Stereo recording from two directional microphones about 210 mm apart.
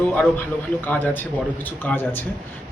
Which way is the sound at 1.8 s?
10° left (ahead or behind).